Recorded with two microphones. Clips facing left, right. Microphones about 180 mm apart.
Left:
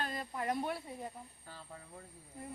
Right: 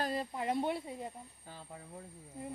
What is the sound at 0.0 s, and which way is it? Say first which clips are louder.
Snake: right 5 dB; 35° right (ahead or behind).